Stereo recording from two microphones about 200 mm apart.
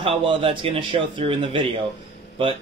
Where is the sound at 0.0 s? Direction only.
25° right (ahead or behind).